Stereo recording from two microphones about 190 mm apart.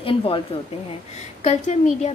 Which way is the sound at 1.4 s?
40° left (ahead or behind).